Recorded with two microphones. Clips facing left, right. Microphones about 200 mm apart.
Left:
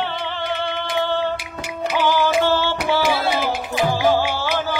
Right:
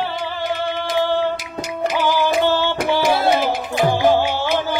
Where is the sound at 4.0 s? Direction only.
20° right (ahead or behind).